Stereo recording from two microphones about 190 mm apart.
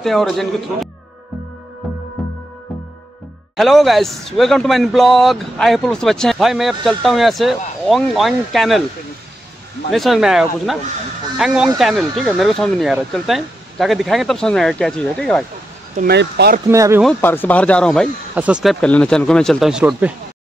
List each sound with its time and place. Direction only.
0.0 s speech: centre (ahead or behind)
3.5 s speech: centre (ahead or behind)
9.8 s speech: centre (ahead or behind)
16.0 s speech: 60° right (ahead or behind)
16.7 s speech: 15° right (ahead or behind)
17.2 s speech: 10° left (ahead or behind)
18.3 s speech: 5° right (ahead or behind)